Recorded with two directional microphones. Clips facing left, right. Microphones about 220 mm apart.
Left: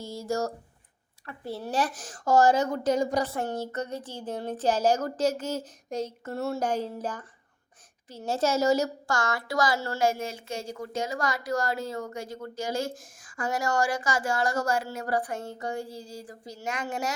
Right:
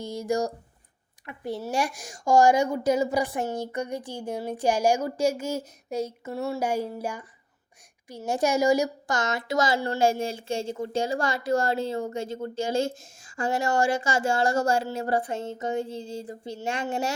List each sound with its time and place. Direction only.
0.0 s a woman's voice: 15° right (ahead or behind)
8.3 s a woman's voice: 15° right (ahead or behind)